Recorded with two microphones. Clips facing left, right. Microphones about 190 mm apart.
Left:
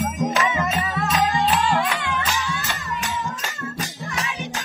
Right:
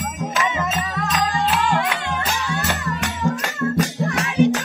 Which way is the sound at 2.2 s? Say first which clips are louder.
Right 3 dB; 65° right (ahead or behind).